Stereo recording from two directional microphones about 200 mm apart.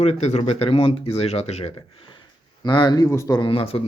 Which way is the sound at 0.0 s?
35° left (ahead or behind).